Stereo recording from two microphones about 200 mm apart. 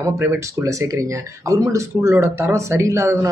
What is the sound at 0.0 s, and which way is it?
Speech, 15° right (ahead or behind).